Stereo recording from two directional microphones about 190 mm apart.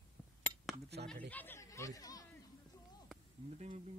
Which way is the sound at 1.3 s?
10° left (ahead or behind).